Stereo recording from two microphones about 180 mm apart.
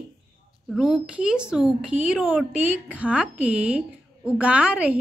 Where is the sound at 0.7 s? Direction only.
5° right (ahead or behind).